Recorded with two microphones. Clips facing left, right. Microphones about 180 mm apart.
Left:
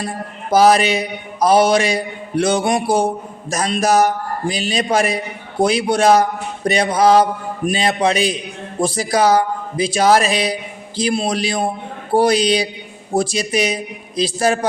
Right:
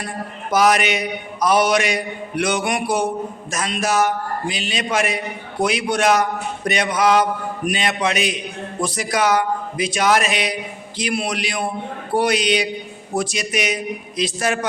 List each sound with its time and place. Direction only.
0.5 s a man's voice: 30° left (ahead or behind)